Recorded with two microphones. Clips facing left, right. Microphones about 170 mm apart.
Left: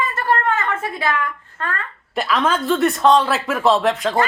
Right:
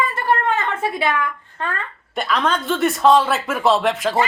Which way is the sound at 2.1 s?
Centre (ahead or behind).